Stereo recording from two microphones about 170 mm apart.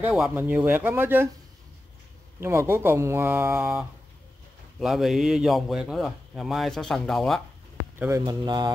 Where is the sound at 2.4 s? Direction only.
15° right (ahead or behind).